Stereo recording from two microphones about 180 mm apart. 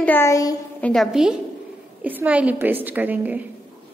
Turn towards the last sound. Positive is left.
turn(degrees=-10)  # may be behind; listen again after turning